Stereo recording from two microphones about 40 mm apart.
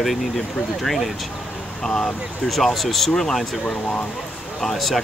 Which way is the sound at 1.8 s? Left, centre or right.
Centre.